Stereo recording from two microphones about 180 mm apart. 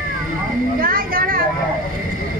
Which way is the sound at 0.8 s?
55° right (ahead or behind).